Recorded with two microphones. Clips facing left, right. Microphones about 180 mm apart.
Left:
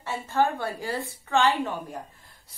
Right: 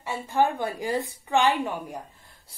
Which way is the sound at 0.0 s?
15° right (ahead or behind).